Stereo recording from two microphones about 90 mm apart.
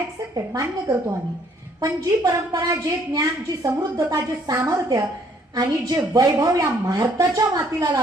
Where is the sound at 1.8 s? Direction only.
40° right (ahead or behind).